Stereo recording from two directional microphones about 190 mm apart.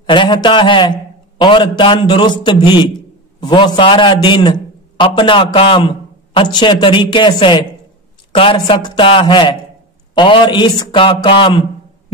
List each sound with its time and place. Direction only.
0.0 s a man's voice: 25° left (ahead or behind)